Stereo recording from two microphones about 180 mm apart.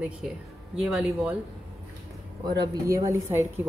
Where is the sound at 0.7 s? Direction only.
5° right (ahead or behind).